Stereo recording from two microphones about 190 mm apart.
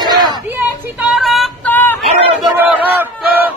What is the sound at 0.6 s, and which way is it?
Child singing, 5° right (ahead or behind).